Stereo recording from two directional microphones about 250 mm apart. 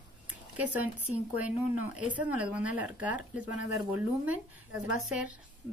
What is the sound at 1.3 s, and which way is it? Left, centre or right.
Speech, centre.